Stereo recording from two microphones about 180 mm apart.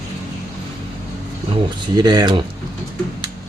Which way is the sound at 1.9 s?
20° right (ahead or behind).